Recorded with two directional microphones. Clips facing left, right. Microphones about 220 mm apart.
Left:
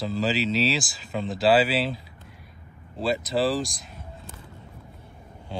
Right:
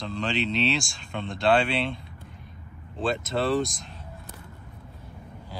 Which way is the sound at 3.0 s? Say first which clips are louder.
Left 2 dB; centre (ahead or behind).